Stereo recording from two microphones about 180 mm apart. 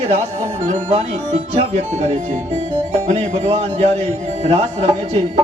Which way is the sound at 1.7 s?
40° right (ahead or behind).